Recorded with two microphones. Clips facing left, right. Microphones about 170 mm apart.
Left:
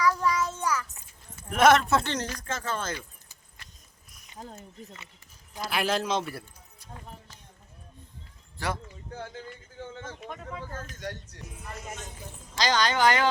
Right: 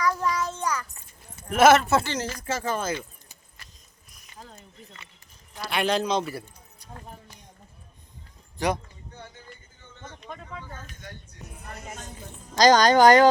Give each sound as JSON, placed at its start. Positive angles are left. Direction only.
{"t": 0.2, "sound": "child singing", "side_deg": 0}
{"t": 1.5, "sound": "speech", "side_deg": -5}
{"t": 4.4, "sound": "speech", "side_deg": 45}
{"t": 5.6, "sound": "speech", "side_deg": 0}
{"t": 8.5, "sound": "speech", "side_deg": -15}
{"t": 9.7, "sound": "a sound", "side_deg": 90}
{"t": 10.2, "sound": "speech", "side_deg": 5}
{"t": 11.0, "sound": "speech", "side_deg": 80}
{"t": 11.4, "sound": "music", "side_deg": -55}
{"t": 12.5, "sound": "a woman's voice", "side_deg": -40}